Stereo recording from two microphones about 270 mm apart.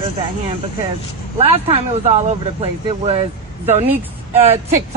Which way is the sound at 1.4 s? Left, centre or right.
Right.